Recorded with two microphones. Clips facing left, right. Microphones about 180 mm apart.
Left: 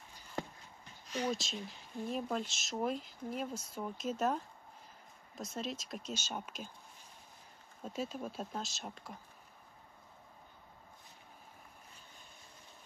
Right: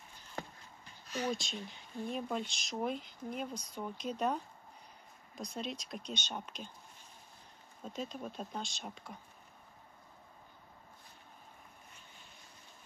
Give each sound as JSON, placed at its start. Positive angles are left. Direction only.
{"t": 1.1, "sound": "speech", "side_deg": 5}
{"t": 7.8, "sound": "speech", "side_deg": 5}